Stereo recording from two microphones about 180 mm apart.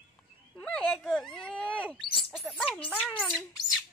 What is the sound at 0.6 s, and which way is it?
Speech, 5° left (ahead or behind).